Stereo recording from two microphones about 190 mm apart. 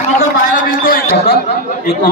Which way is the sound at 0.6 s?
50° left (ahead or behind).